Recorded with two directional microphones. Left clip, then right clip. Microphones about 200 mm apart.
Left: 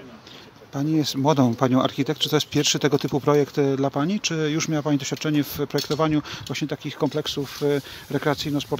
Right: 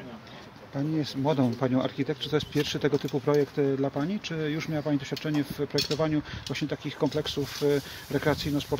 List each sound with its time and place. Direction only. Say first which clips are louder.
0.7 s speech: left 7 dB; 40° left (ahead or behind)